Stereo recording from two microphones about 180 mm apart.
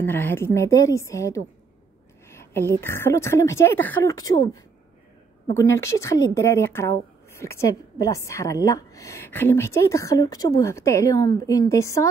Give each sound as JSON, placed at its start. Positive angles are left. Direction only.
{"t": 0.0, "sound": "a woman's voice", "side_deg": 10}
{"t": 2.3, "sound": "a sound", "side_deg": 10}
{"t": 2.8, "sound": "a woman's voice", "side_deg": 15}
{"t": 5.5, "sound": "a woman's voice", "side_deg": 15}